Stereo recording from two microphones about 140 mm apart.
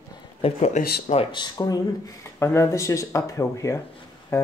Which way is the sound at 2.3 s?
20° left (ahead or behind).